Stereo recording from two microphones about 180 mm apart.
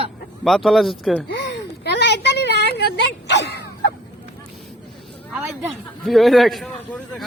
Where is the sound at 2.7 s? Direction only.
70° left (ahead or behind).